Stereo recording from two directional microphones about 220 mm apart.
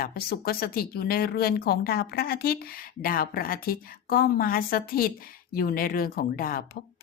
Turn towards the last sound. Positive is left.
turn(degrees=40)  # may be behind; listen again after turning